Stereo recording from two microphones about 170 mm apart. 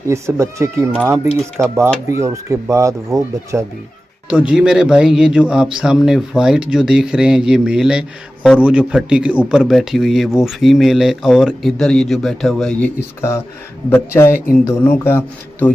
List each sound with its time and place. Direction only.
0.1 s speech: 15° right (ahead or behind)
4.3 s a man's voice: 5° right (ahead or behind)
13.9 s speech: 15° left (ahead or behind)